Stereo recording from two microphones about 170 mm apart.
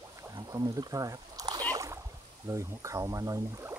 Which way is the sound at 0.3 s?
20° right (ahead or behind).